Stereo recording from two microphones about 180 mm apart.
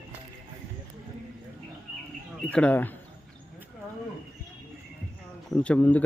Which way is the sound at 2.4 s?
5° left (ahead or behind).